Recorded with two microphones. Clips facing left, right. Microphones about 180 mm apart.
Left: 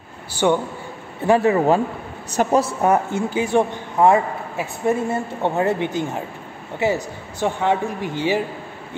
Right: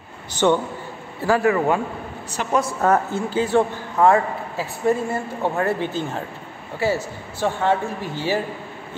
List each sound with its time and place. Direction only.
0.3 s speech: 10° left (ahead or behind)
1.2 s a woman's voice: 25° left (ahead or behind)
2.4 s speech: 45° left (ahead or behind)
2.8 s a man's voice: 15° left (ahead or behind)